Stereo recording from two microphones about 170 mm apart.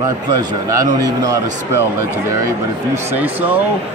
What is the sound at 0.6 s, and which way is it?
Speech, 20° right (ahead or behind).